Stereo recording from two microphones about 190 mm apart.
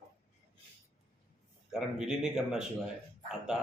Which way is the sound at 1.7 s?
5° right (ahead or behind).